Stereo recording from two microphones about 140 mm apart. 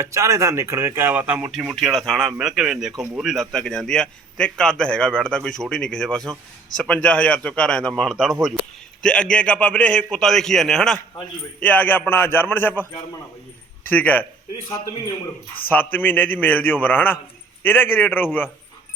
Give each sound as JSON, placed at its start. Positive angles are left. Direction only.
{"t": 0.0, "sound": "a man's voice", "side_deg": -20}
{"t": 15.7, "sound": "a man's voice", "side_deg": 15}